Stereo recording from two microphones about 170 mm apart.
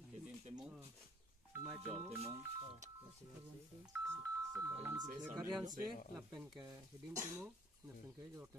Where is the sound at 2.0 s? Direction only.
35° right (ahead or behind).